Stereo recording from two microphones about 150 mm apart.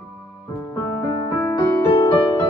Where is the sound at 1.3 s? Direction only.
25° left (ahead or behind).